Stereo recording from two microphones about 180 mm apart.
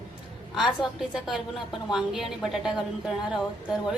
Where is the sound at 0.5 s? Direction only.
Centre (ahead or behind).